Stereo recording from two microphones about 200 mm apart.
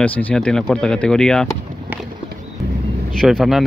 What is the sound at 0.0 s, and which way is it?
Speech, 5° left (ahead or behind).